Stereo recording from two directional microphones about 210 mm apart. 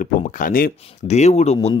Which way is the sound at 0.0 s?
40° left (ahead or behind).